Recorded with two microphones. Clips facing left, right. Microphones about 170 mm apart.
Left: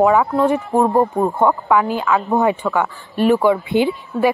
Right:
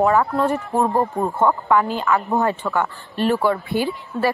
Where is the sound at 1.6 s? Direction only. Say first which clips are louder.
Left 2 dB; 5° left (ahead or behind).